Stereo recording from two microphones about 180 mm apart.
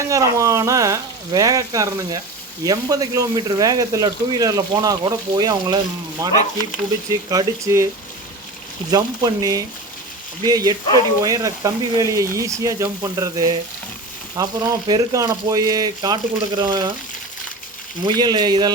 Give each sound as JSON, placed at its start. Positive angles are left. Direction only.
{"t": 0.1, "sound": "speech", "side_deg": -15}
{"t": 8.9, "sound": "speech", "side_deg": -20}
{"t": 18.0, "sound": "speech", "side_deg": -25}